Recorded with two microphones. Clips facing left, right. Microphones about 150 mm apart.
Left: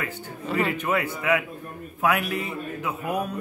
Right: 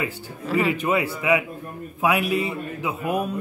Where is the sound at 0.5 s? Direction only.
Centre (ahead or behind).